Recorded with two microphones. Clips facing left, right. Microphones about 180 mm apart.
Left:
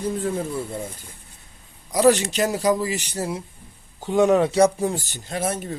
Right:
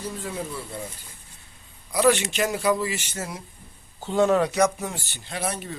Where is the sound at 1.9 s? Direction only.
40° left (ahead or behind).